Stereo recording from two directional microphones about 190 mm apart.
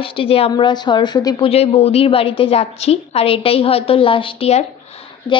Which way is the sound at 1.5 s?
35° left (ahead or behind).